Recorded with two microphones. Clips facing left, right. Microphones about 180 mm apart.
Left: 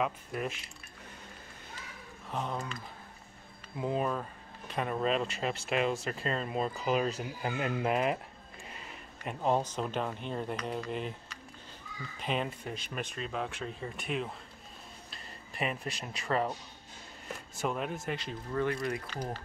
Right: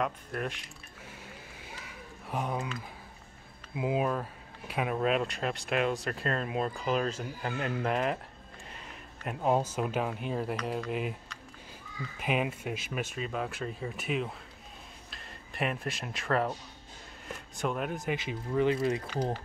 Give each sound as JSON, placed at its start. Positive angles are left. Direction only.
{"t": 0.0, "sound": "speech", "side_deg": 5}
{"t": 2.2, "sound": "speech", "side_deg": -10}
{"t": 9.2, "sound": "speech", "side_deg": -5}
{"t": 12.2, "sound": "speech", "side_deg": -10}
{"t": 18.7, "sound": "speech", "side_deg": -25}